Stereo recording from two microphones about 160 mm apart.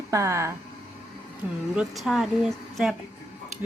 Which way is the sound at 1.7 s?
5° right (ahead or behind).